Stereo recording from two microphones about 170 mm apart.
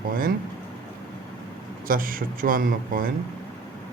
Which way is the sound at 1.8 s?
55° right (ahead or behind).